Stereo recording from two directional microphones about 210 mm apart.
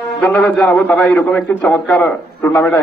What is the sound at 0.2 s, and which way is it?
A man's voice, 5° left (ahead or behind).